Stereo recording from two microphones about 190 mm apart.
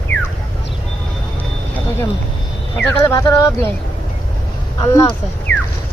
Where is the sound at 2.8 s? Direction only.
5° left (ahead or behind).